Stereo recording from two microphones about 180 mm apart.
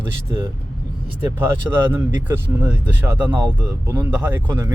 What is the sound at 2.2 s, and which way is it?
Speech, 10° right (ahead or behind).